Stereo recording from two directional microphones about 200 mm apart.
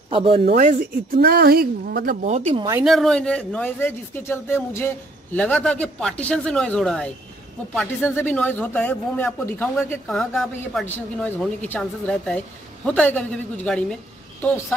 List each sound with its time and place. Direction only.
0.1 s speech: 25° right (ahead or behind)
0.5 s speech: 45° right (ahead or behind)
2.8 s a man's voice: centre (ahead or behind)